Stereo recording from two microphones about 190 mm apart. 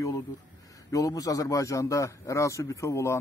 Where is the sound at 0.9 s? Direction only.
20° left (ahead or behind).